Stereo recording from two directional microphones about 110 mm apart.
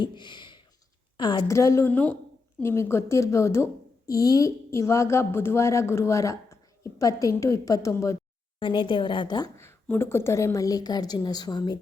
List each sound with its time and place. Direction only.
0.0 s a sound: 45° left (ahead or behind)
1.1 s a woman's voice: 45° left (ahead or behind)
1.5 s a woman's voice: 30° left (ahead or behind)
1.9 s a woman's voice: 15° left (ahead or behind)
8.5 s a woman's voice: 50° left (ahead or behind)
9.6 s a woman's voice: 20° left (ahead or behind); by 11.8 s 40° left (ahead or behind)